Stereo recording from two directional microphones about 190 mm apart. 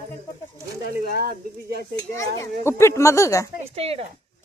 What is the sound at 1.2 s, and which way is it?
Speech, 55° right (ahead or behind).